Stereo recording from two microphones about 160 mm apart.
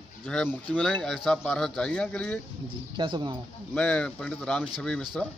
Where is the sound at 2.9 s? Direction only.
30° right (ahead or behind).